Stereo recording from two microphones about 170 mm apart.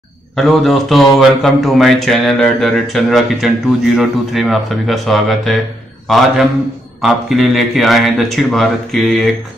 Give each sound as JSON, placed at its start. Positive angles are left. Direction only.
{"t": 0.4, "sound": "speech", "side_deg": 0}